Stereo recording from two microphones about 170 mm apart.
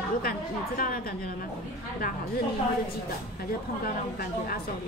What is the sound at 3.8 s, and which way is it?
Speech, 60° left (ahead or behind).